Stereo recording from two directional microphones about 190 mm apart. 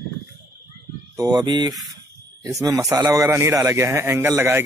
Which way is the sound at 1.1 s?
20° right (ahead or behind).